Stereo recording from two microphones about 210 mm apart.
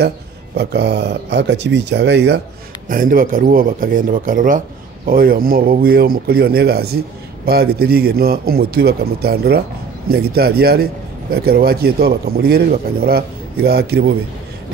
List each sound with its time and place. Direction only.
0.6 s a man's voice: 55° right (ahead or behind)
2.9 s a man's voice: 40° right (ahead or behind)